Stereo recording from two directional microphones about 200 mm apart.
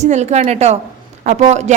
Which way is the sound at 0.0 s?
35° right (ahead or behind).